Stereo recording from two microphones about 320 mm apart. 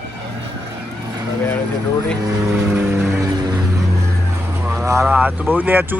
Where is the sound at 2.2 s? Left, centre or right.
Centre.